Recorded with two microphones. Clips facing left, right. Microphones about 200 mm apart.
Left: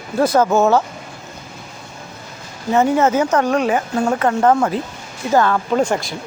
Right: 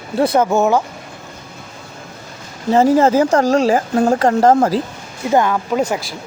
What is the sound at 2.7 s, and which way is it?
A woman's voice, 30° right (ahead or behind).